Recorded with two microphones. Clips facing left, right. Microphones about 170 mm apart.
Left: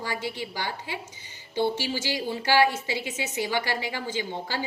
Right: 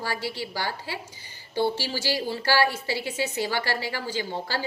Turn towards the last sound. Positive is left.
turn(degrees=15)  # may be behind; listen again after turning